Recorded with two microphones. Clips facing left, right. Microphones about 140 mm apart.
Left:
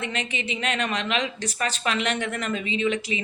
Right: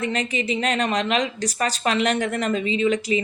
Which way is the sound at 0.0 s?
40° right (ahead or behind).